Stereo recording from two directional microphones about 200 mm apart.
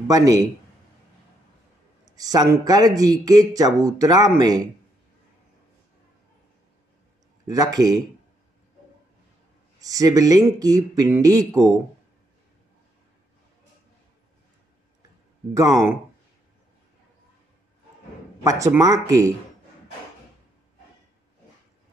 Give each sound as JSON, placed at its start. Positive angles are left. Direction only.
{"t": 0.1, "sound": "speech", "side_deg": -15}
{"t": 2.0, "sound": "speech", "side_deg": -20}
{"t": 7.4, "sound": "speech", "side_deg": -20}
{"t": 9.8, "sound": "speech", "side_deg": -15}
{"t": 15.5, "sound": "speech", "side_deg": -15}
{"t": 18.4, "sound": "speech", "side_deg": -15}